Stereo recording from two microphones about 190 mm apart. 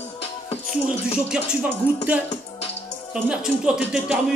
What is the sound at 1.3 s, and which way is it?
Speech, 5° right (ahead or behind).